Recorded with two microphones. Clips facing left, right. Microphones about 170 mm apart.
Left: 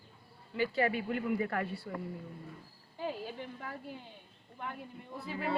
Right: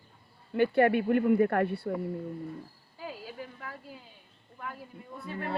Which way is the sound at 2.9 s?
25° left (ahead or behind).